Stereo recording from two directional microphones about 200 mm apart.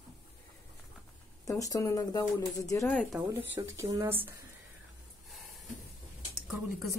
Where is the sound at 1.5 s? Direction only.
15° left (ahead or behind).